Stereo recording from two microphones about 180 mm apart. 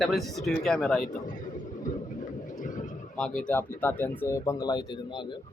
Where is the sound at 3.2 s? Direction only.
5° left (ahead or behind); by 5.4 s 25° left (ahead or behind).